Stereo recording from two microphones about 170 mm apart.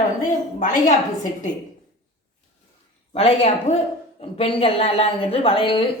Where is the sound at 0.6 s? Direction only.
50° left (ahead or behind).